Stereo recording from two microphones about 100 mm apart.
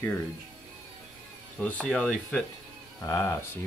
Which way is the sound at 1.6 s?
10° left (ahead or behind).